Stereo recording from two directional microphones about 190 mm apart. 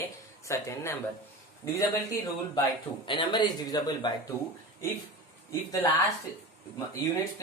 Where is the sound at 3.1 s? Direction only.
25° left (ahead or behind).